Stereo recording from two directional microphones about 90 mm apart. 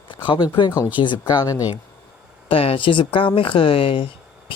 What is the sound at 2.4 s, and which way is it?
Speech, 90° left.